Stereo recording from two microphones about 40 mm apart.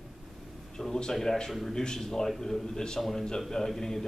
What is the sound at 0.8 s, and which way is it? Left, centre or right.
A man's voice, centre.